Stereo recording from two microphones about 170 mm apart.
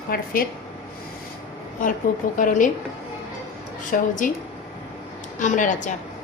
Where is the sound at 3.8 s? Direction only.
50° left (ahead or behind).